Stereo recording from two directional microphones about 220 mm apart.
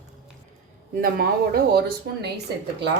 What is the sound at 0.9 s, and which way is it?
Speech, 45° right (ahead or behind).